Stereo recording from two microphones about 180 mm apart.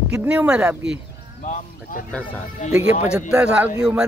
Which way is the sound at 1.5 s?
45° left (ahead or behind).